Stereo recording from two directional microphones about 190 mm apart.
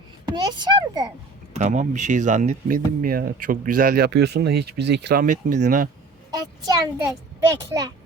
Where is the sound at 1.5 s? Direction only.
40° right (ahead or behind).